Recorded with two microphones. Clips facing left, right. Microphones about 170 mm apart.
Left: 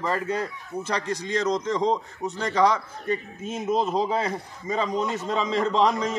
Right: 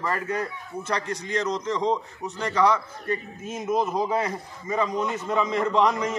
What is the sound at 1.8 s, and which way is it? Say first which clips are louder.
Speech: left 1 dB; 35° left (ahead or behind).